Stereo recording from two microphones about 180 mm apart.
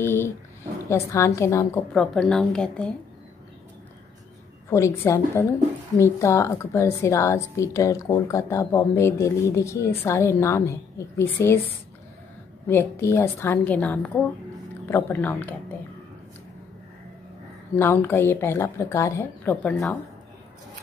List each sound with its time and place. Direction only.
0.0 s a sound: 10° left (ahead or behind)
0.8 s a woman's voice: 15° left (ahead or behind)
2.0 s a woman's voice: 5° left (ahead or behind)
4.6 s a woman's voice: 15° left (ahead or behind)
12.6 s a woman's voice: 15° left (ahead or behind)
17.7 s a woman's voice: 15° left (ahead or behind)